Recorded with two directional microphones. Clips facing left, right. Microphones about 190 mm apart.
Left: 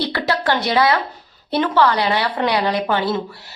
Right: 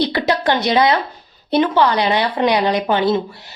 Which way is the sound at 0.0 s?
20° right (ahead or behind).